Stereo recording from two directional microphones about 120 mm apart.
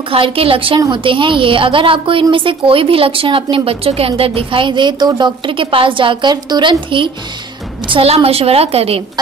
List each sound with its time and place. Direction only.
0.1 s a woman's voice: 50° right (ahead or behind)